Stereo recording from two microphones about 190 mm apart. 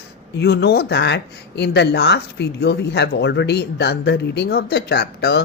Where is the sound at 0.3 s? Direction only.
60° left (ahead or behind).